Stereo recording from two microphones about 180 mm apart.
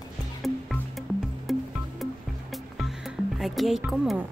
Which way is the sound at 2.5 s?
Centre (ahead or behind).